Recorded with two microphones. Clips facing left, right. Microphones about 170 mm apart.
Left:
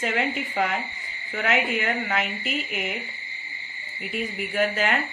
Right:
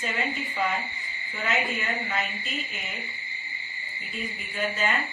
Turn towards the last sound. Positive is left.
turn(degrees=80)